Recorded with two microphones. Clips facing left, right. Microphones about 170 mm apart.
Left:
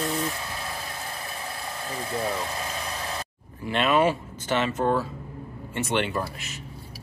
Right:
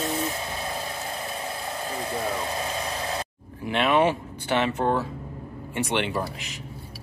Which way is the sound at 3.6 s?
15° right (ahead or behind).